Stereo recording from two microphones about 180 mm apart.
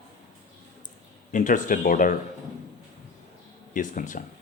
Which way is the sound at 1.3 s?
45° left (ahead or behind).